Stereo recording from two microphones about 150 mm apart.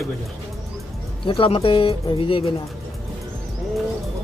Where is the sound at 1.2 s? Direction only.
35° left (ahead or behind).